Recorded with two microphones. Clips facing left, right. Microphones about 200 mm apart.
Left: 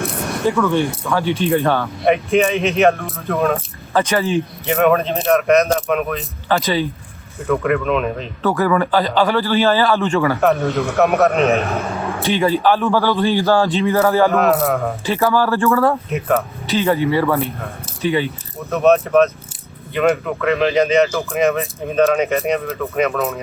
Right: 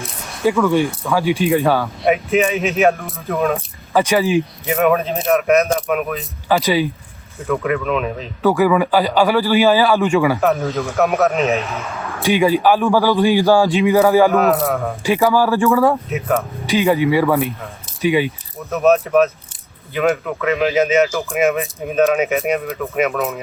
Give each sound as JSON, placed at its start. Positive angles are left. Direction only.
{"t": 0.0, "sound": "a sound", "side_deg": 55}
{"t": 0.4, "sound": "speech", "side_deg": -15}
{"t": 3.9, "sound": "speech", "side_deg": -10}
{"t": 7.3, "sound": "speech", "side_deg": 0}
{"t": 10.4, "sound": "speech", "side_deg": 0}
{"t": 11.6, "sound": "a man's voice", "side_deg": 50}
{"t": 11.9, "sound": "a sound", "side_deg": 30}
{"t": 12.2, "sound": "speech", "side_deg": -10}
{"t": 14.3, "sound": "speech", "side_deg": 0}
{"t": 15.0, "sound": "speech", "side_deg": -10}
{"t": 16.0, "sound": "speech", "side_deg": 0}
{"t": 16.6, "sound": "speech", "side_deg": -10}
{"t": 18.7, "sound": "speech", "side_deg": 0}
{"t": 21.5, "sound": "speech", "side_deg": 0}